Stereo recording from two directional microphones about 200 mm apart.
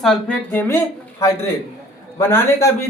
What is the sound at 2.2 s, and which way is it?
Speech, 10° left (ahead or behind).